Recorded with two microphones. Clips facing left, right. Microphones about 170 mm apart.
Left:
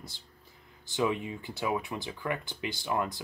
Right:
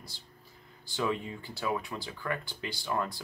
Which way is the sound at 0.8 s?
20° left (ahead or behind).